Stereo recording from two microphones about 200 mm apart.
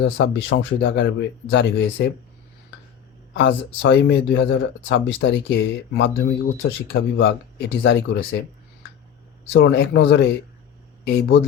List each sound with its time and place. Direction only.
0.0 s speech: 55° left (ahead or behind)
3.3 s speech: 60° left (ahead or behind)
9.5 s speech: 60° left (ahead or behind)